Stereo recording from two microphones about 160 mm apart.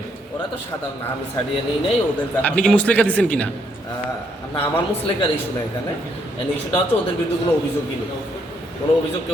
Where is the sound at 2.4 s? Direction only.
5° left (ahead or behind).